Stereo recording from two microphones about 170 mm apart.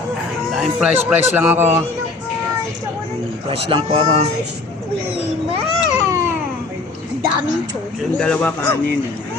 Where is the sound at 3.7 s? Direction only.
35° right (ahead or behind).